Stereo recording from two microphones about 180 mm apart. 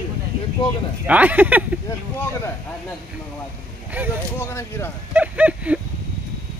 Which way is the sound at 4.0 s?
10° right (ahead or behind).